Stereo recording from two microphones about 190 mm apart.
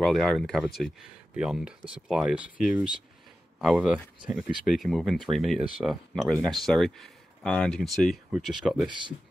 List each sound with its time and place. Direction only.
0.0 s speech: centre (ahead or behind)
8.8 s speech: 25° right (ahead or behind)